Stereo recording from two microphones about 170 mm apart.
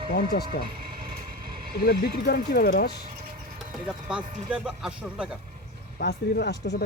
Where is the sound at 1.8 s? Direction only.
70° left (ahead or behind).